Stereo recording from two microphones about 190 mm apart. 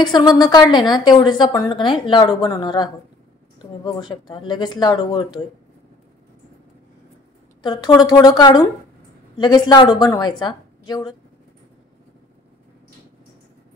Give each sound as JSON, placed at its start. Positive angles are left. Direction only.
{"t": 0.0, "sound": "a woman's voice", "side_deg": 25}
{"t": 7.6, "sound": "a woman's voice", "side_deg": 20}